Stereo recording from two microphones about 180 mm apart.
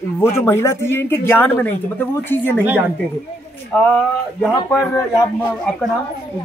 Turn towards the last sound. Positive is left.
turn(degrees=10)  # may be behind; listen again after turning